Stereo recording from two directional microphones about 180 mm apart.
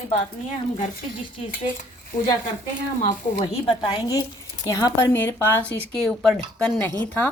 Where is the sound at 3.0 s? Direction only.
45° left (ahead or behind).